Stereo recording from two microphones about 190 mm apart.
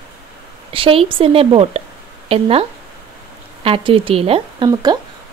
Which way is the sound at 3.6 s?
30° right (ahead or behind).